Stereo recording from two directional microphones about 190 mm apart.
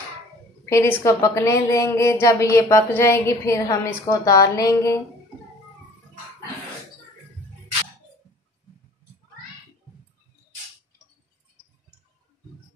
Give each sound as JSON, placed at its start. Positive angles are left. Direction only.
{"t": 0.7, "sound": "a woman's voice", "side_deg": 15}